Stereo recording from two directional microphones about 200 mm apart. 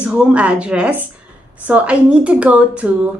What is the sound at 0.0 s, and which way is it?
Speech, 5° right (ahead or behind).